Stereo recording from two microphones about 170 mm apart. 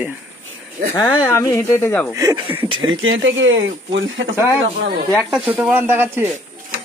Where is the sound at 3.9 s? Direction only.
90° right.